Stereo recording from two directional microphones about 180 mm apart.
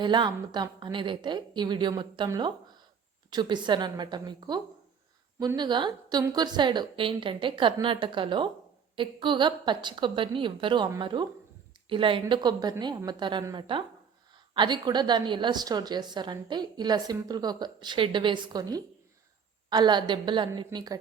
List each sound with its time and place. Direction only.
0.0 s a woman's voice: 25° right (ahead or behind)